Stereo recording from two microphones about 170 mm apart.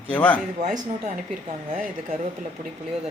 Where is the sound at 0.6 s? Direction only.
45° right (ahead or behind).